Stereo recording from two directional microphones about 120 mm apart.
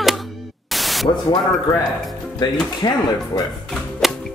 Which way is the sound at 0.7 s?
Centre (ahead or behind).